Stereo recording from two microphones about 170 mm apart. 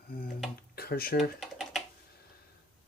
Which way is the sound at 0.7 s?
60° left (ahead or behind).